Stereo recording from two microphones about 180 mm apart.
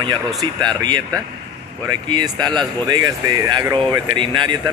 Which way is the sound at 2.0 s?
25° right (ahead or behind).